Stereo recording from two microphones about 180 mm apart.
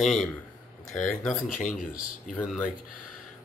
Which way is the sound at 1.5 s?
50° left (ahead or behind).